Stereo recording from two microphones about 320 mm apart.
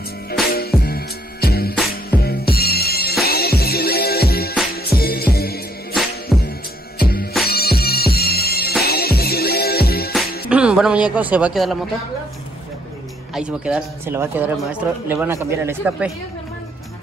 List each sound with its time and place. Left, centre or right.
0.5 s music: left
6.3 s music: centre
7.0 s music: left
10.5 s a sound: centre
13.3 s a man's voice: centre